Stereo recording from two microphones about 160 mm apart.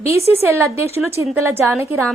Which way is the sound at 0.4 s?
15° right (ahead or behind).